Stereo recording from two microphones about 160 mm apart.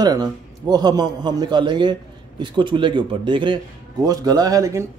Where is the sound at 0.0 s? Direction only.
25° right (ahead or behind).